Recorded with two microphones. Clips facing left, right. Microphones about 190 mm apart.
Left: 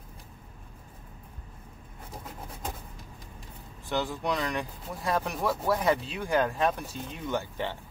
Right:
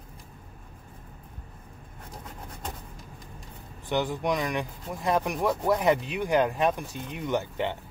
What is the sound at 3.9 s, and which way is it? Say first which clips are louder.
Speech: right 3 dB; 15° right (ahead or behind).